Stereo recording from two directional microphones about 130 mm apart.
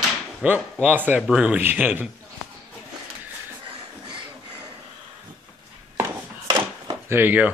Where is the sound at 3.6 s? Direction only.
40° right (ahead or behind).